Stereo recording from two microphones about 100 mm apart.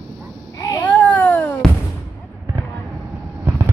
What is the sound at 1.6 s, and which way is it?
Artillery fire, 5° left (ahead or behind).